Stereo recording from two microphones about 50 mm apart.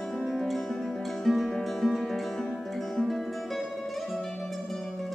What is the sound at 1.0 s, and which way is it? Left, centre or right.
Music, centre.